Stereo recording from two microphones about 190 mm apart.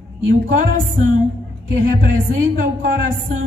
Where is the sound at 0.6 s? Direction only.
40° right (ahead or behind).